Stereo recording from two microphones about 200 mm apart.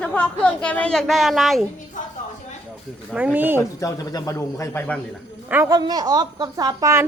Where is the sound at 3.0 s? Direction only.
5° right (ahead or behind).